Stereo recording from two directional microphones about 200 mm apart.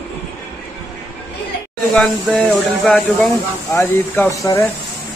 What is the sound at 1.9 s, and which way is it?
Speech, centre (ahead or behind).